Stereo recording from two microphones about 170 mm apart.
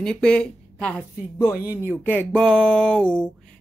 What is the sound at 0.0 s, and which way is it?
Speech, 5° left (ahead or behind).